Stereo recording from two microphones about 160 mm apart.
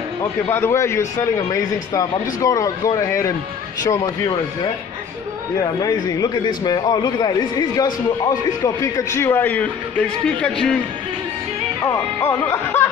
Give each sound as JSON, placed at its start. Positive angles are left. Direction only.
{"t": 0.2, "sound": "a man's voice", "side_deg": 15}
{"t": 5.6, "sound": "a man's voice", "side_deg": 25}
{"t": 11.8, "sound": "a man's voice", "side_deg": 20}